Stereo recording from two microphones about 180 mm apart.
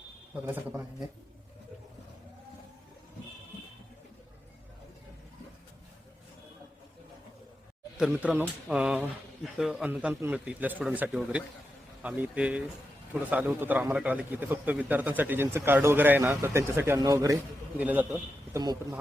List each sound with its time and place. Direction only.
7.9 s a man's voice: 5° right (ahead or behind)
18.6 s speech: 20° right (ahead or behind)